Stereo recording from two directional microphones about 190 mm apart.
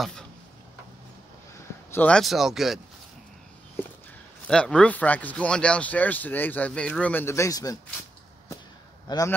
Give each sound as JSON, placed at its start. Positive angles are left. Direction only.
{"t": 1.9, "sound": "speech", "side_deg": 5}
{"t": 4.5, "sound": "speech", "side_deg": 5}
{"t": 9.1, "sound": "a man's voice", "side_deg": 20}